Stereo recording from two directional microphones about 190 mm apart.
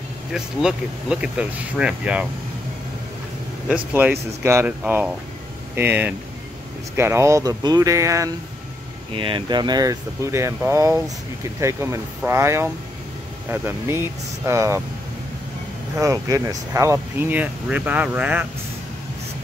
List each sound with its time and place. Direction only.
0.3 s speech: 5° right (ahead or behind)
3.6 s speech: 10° right (ahead or behind)
9.1 s speech: 25° right (ahead or behind)
16.0 s speech: 15° right (ahead or behind)